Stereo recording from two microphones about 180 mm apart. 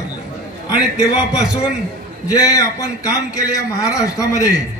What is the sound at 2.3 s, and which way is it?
A man's voice, 20° left (ahead or behind).